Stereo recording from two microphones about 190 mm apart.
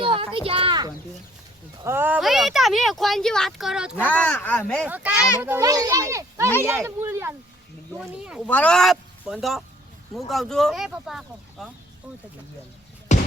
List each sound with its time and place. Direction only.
0.0 s a sound: 25° right (ahead or behind)
1.8 s speech: 10° right (ahead or behind)
3.9 s speech: 10° left (ahead or behind)
4.9 s a child's voice: 10° right (ahead or behind)
8.4 s speech: 5° left (ahead or behind)
13.1 s basketball bounce: 40° left (ahead or behind)